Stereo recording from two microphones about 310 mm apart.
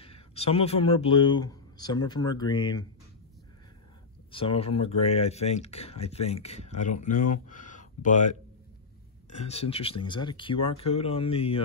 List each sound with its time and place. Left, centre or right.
0.0 s speech: centre
4.3 s speech: centre
9.5 s speech: centre